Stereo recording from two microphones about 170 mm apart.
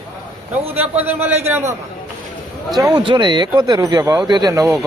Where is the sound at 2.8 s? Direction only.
25° right (ahead or behind).